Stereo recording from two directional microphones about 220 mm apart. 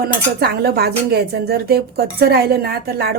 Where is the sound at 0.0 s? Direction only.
45° right (ahead or behind).